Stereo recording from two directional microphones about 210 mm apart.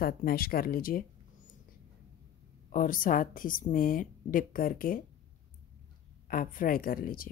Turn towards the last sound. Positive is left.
turn(degrees=45)  # may be behind; listen again after turning